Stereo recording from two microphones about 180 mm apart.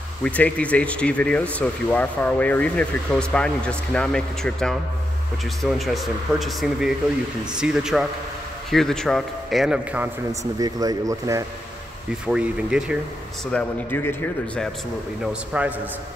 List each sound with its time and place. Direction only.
0.2 s speech: 10° left (ahead or behind)
10.6 s speech: 20° right (ahead or behind)
12.3 s speech: 5° right (ahead or behind)
13.5 s speech: 5° left (ahead or behind)
15.5 s a man's voice: 5° right (ahead or behind)